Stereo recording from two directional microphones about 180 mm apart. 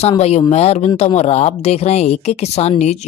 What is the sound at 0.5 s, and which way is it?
Speech, 35° left (ahead or behind).